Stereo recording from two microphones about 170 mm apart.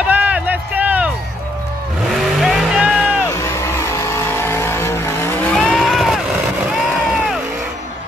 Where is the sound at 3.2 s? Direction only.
15° left (ahead or behind); by 7.4 s 5° right (ahead or behind).